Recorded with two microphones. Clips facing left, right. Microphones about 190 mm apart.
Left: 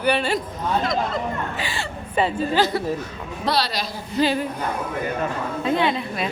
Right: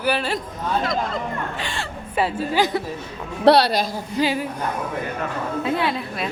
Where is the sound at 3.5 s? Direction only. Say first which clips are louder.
Right 9 dB; 60° right (ahead or behind).